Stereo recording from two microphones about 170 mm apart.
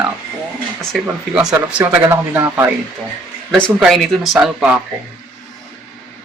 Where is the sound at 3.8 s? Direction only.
Centre (ahead or behind).